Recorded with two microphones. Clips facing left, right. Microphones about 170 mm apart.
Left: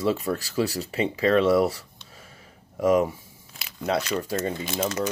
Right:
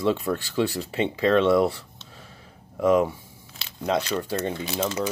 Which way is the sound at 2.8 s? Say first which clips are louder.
Right 1 dB; 10° left (ahead or behind).